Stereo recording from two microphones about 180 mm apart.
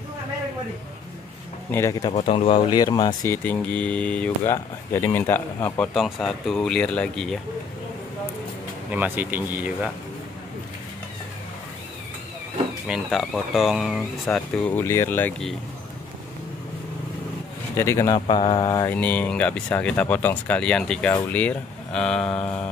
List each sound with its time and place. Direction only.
1.7 s speech: 15° left (ahead or behind)
2.1 s speech: 30° left (ahead or behind)
3.4 s speech: 5° left (ahead or behind)
8.9 s speech: 10° right (ahead or behind)
12.8 s speech: centre (ahead or behind)
17.7 s speech: 15° left (ahead or behind)
18.2 s speech: 30° left (ahead or behind)
18.9 s speech: 5° left (ahead or behind)